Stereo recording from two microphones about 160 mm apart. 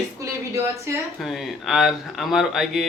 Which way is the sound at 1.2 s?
Centre (ahead or behind).